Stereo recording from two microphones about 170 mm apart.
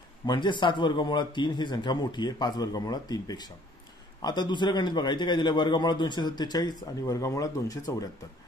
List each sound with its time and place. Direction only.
0.3 s a man's voice: 25° left (ahead or behind)